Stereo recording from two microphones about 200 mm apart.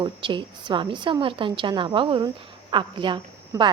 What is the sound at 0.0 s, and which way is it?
A woman's voice, 25° right (ahead or behind).